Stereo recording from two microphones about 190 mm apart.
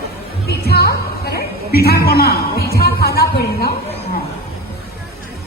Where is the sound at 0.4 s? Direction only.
55° left (ahead or behind).